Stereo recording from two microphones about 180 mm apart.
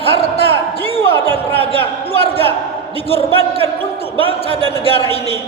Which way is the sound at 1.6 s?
30° left (ahead or behind).